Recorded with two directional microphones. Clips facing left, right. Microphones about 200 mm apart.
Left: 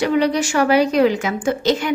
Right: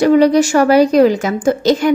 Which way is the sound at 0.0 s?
40° right (ahead or behind).